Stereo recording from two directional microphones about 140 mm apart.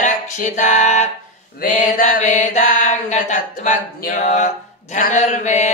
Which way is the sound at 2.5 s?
85° left.